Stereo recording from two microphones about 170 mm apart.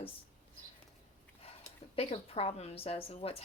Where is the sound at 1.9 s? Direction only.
35° left (ahead or behind).